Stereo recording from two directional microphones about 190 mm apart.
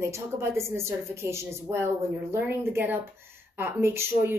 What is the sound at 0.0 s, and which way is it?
A woman's voice, 15° right (ahead or behind).